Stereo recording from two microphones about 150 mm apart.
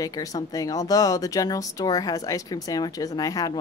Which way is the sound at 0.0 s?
25° left (ahead or behind).